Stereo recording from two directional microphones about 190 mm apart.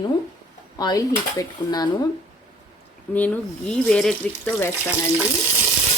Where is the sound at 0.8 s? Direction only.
20° left (ahead or behind).